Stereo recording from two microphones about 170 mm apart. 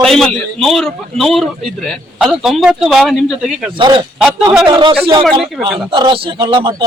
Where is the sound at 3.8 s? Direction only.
30° right (ahead or behind).